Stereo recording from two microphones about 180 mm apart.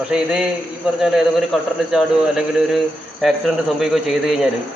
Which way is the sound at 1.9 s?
Centre (ahead or behind).